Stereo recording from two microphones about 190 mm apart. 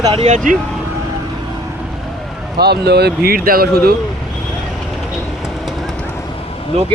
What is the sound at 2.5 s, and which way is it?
Speech, 60° right (ahead or behind).